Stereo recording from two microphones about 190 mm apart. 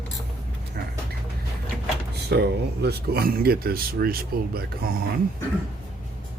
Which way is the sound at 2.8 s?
60° right (ahead or behind).